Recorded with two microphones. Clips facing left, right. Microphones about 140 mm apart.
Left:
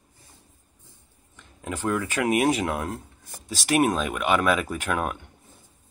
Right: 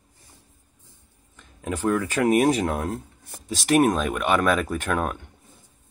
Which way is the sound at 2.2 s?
10° right (ahead or behind).